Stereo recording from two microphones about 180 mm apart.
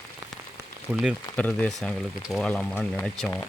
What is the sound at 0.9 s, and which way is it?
Speech, 5° left (ahead or behind).